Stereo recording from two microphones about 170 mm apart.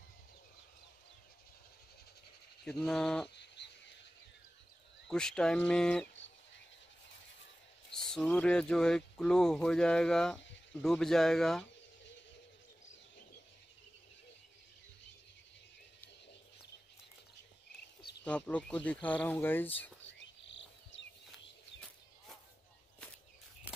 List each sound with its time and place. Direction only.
2.6 s speech: 5° left (ahead or behind)
3.3 s frog: 90° left
5.0 s speech: 5° left (ahead or behind)
7.9 s speech: 5° left (ahead or behind)
18.2 s speech: 10° left (ahead or behind)
20.1 s cricket: 90° left